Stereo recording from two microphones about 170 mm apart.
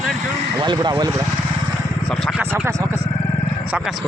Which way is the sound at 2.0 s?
Centre (ahead or behind).